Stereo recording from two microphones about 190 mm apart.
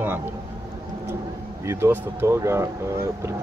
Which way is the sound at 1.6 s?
15° right (ahead or behind).